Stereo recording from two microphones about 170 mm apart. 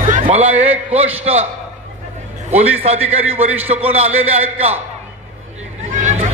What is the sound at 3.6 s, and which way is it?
Speech, 40° right (ahead or behind).